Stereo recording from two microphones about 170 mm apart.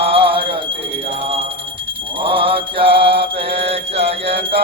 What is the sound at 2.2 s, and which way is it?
Mantra, 30° right (ahead or behind).